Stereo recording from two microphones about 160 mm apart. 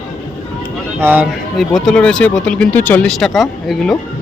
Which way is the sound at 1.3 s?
Centre (ahead or behind).